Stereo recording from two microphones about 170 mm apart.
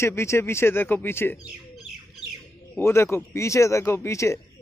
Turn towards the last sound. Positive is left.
turn(degrees=15)  # may be behind; listen again after turning